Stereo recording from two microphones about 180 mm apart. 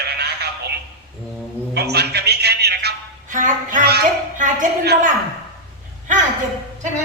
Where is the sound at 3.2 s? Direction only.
45° right (ahead or behind).